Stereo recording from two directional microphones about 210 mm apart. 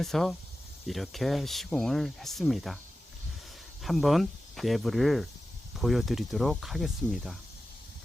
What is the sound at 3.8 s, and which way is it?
Speech, centre (ahead or behind).